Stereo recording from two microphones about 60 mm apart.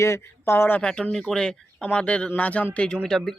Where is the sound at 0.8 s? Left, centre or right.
Centre.